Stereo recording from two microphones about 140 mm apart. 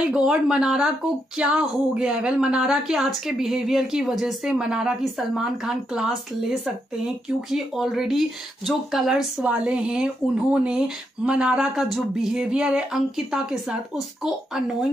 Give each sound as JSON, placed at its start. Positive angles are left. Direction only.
{"t": 0.1, "sound": "a woman's voice", "side_deg": -5}